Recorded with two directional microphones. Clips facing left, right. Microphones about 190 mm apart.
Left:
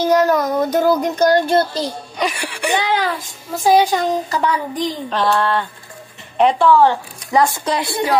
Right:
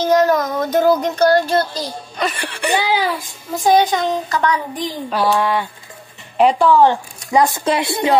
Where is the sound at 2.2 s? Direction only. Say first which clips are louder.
Even; 10° left (ahead or behind).